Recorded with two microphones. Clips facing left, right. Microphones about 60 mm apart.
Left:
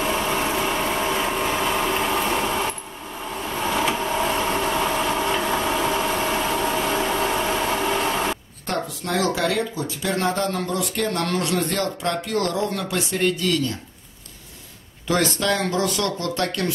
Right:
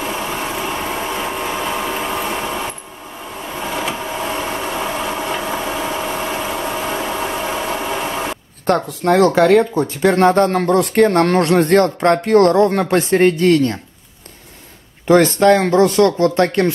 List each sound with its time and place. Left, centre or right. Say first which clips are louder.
0.0 s a sound: even; centre
3.4 s vehicle: even; centre
8.6 s speech: right 11 dB; right
15.0 s speech: right 11 dB; right